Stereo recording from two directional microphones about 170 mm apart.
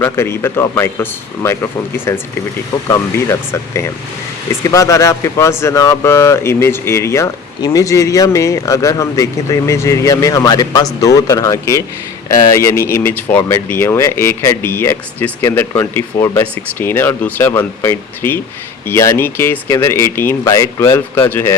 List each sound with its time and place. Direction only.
0.0 s speech: 15° left (ahead or behind)